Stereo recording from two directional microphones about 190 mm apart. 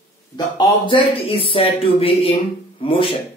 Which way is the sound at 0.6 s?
25° left (ahead or behind).